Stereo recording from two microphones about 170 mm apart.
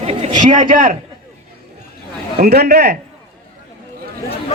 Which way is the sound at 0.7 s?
55° right (ahead or behind).